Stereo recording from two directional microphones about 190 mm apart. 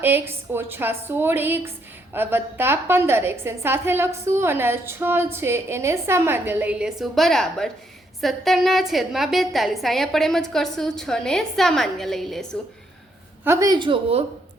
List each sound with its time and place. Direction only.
0.0 s a woman's voice: 10° right (ahead or behind)
13.4 s a woman's voice: 15° right (ahead or behind); by 14.3 s 30° right (ahead or behind)